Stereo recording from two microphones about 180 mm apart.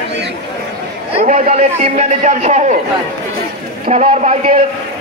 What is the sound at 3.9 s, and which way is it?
Speech, 40° right (ahead or behind).